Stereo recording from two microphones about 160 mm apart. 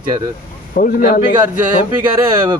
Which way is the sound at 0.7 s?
60° left (ahead or behind).